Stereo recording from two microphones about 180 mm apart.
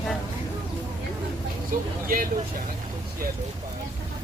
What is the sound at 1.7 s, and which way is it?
Speech, 50° right (ahead or behind).